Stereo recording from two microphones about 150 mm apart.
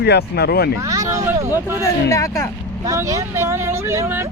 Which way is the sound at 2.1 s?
20° left (ahead or behind).